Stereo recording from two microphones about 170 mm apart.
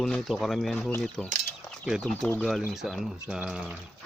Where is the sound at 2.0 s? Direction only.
10° left (ahead or behind).